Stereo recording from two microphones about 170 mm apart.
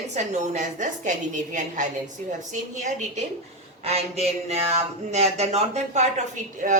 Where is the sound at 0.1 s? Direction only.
45° right (ahead or behind).